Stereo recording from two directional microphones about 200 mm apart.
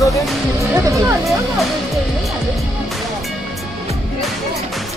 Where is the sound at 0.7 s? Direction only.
15° right (ahead or behind).